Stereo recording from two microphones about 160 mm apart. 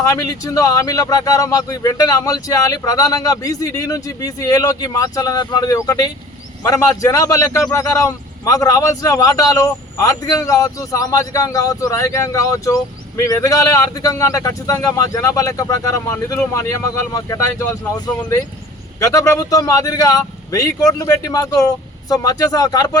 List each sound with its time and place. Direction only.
0.0 s a man's voice: 20° left (ahead or behind)